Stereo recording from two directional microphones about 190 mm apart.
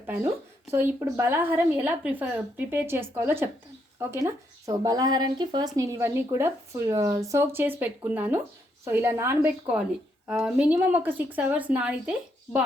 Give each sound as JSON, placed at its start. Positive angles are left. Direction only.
{"t": 0.7, "sound": "speech", "side_deg": -10}